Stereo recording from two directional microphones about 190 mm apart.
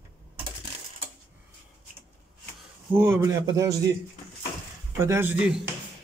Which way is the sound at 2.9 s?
10° right (ahead or behind).